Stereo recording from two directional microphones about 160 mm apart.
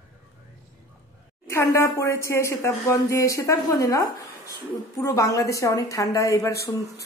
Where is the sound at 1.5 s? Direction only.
20° left (ahead or behind).